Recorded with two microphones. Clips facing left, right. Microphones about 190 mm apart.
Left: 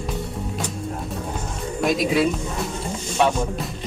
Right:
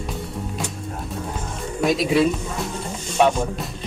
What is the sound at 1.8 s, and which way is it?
Speech, centre (ahead or behind).